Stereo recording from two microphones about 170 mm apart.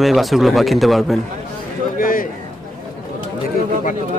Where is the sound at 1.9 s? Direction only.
55° left (ahead or behind).